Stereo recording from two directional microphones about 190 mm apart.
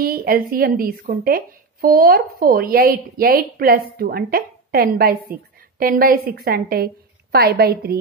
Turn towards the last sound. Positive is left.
turn(degrees=-55)  # may be behind; listen again after turning